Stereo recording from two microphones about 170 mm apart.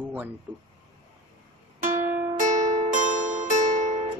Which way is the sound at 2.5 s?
50° right (ahead or behind).